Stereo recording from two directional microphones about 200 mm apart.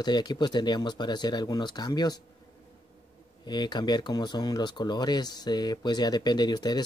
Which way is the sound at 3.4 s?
20° left (ahead or behind).